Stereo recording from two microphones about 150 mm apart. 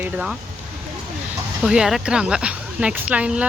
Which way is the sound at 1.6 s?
5° right (ahead or behind).